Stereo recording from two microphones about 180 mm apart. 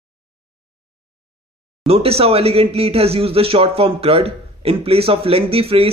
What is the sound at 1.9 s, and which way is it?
Speech, 30° right (ahead or behind).